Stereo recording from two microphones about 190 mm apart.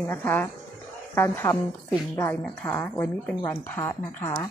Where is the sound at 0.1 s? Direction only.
10° left (ahead or behind).